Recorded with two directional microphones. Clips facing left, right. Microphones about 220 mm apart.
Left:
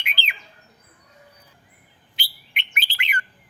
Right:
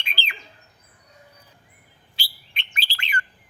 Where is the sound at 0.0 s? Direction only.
20° left (ahead or behind).